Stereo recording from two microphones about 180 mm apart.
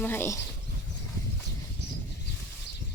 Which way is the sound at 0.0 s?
10° left (ahead or behind).